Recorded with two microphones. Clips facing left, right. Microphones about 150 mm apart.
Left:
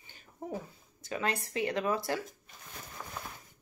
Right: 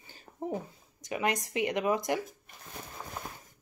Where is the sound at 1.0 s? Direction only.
15° right (ahead or behind).